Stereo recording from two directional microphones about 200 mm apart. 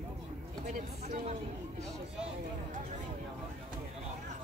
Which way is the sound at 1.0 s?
35° right (ahead or behind).